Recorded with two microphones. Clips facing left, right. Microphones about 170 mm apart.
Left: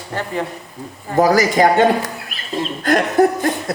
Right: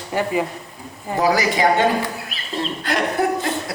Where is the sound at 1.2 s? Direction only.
45° left (ahead or behind).